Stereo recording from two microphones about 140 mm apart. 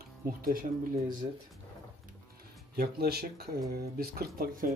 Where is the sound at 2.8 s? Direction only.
90° right.